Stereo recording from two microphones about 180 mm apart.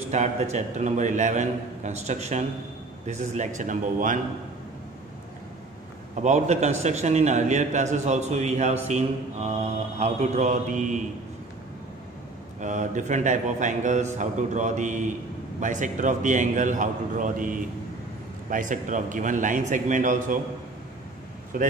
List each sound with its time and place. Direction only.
0.1 s a man's voice: 40° right (ahead or behind)
6.2 s a man's voice: 40° right (ahead or behind)
12.5 s a man's voice: 45° right (ahead or behind)
21.5 s a man's voice: 50° right (ahead or behind)